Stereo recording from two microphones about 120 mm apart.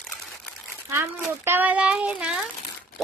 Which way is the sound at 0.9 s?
20° right (ahead or behind).